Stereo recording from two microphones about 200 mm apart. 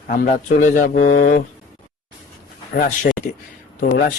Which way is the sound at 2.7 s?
45° left (ahead or behind).